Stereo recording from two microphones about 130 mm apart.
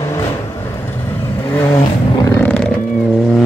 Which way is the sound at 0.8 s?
20° left (ahead or behind).